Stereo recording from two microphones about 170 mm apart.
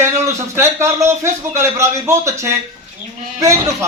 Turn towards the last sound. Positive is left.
turn(degrees=-15)  # may be behind; listen again after turning